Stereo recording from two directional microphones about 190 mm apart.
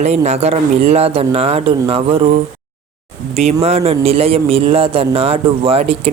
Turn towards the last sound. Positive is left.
turn(degrees=-30)  # may be behind; listen again after turning